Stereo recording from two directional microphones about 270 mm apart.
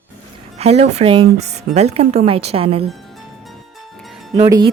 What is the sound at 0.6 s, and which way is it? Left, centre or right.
A woman's voice, right.